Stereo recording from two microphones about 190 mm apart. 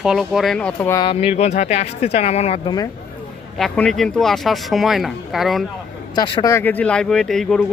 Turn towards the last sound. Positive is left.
turn(degrees=0)  # may be behind; listen again after turning